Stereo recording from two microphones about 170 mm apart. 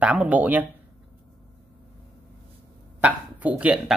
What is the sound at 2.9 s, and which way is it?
Speech, 10° right (ahead or behind).